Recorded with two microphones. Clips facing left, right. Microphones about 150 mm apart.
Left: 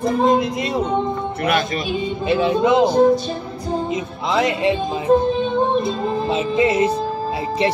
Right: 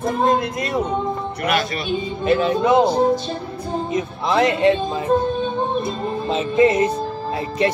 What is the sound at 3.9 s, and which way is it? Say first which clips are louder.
Speech: right 1 dB; 20° left (ahead or behind).